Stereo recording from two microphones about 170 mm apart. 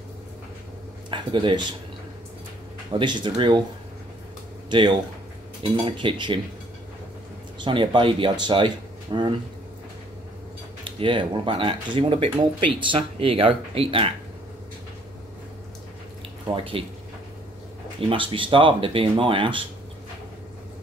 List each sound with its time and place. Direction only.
1.1 s speech: 30° right (ahead or behind)
2.9 s speech: 30° right (ahead or behind)
4.6 s speech: 25° right (ahead or behind)
7.5 s speech: 30° right (ahead or behind)
10.8 s speech: 30° right (ahead or behind)
18.0 s speech: 30° right (ahead or behind)